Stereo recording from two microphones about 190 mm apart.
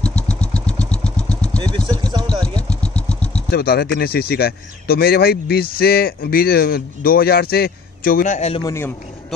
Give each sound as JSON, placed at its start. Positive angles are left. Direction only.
{"t": 0.0, "sound": "vehicle", "side_deg": 5}
{"t": 2.0, "sound": "a sound", "side_deg": -20}
{"t": 2.7, "sound": "vehicle", "side_deg": 5}
{"t": 3.4, "sound": "speech", "side_deg": 55}
{"t": 8.6, "sound": "a man's voice", "side_deg": 15}